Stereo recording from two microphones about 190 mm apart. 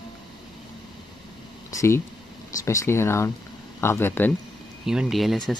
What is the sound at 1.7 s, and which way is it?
Speech, 15° left (ahead or behind).